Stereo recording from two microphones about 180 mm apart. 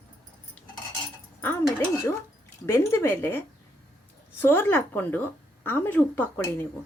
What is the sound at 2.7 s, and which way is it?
A woman's voice, 15° left (ahead or behind).